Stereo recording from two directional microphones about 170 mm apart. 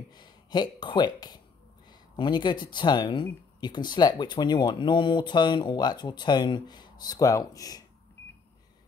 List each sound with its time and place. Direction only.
0.1 s speech: 25° left (ahead or behind)